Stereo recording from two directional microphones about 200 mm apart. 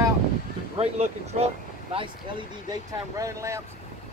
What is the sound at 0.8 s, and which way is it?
Speech, 30° right (ahead or behind).